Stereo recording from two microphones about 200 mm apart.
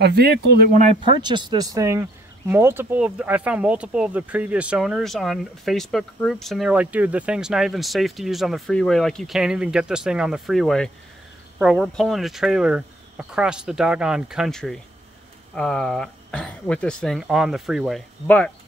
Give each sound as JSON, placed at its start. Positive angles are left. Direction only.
{"t": 0.0, "sound": "speech", "side_deg": -55}
{"t": 1.0, "sound": "speech", "side_deg": -20}